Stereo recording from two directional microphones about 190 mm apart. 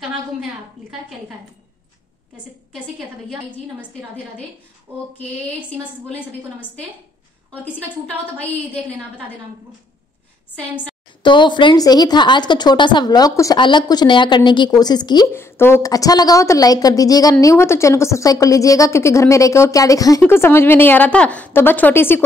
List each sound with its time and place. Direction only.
11.2 s speech: 25° left (ahead or behind)